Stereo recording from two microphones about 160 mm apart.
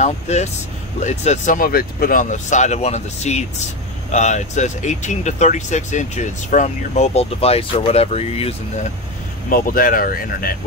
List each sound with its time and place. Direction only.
0.0 s speech: 45° left (ahead or behind)
9.5 s speech: 60° left (ahead or behind)